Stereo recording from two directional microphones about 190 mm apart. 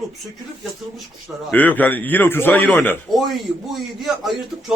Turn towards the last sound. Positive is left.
turn(degrees=0)  # may be behind; listen again after turning